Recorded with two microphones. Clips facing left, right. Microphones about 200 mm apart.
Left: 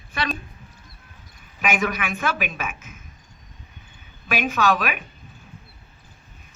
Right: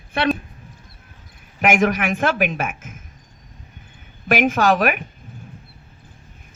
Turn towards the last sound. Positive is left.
turn(degrees=-90)